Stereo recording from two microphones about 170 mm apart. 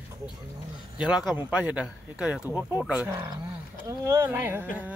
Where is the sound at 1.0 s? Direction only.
Centre (ahead or behind).